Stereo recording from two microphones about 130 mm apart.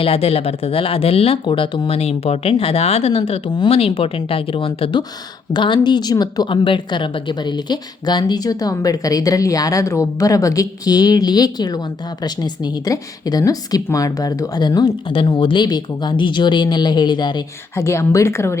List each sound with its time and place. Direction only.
0.0 s speech: 50° left (ahead or behind)
17.7 s a woman's voice: 20° left (ahead or behind)